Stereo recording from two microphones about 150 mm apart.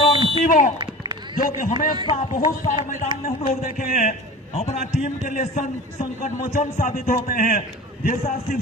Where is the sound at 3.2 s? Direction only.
60° left (ahead or behind).